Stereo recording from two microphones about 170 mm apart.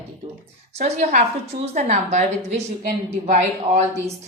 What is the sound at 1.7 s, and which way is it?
Speech, 45° right (ahead or behind).